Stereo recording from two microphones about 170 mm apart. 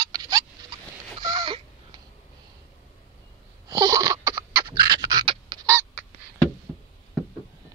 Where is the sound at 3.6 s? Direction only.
20° right (ahead or behind).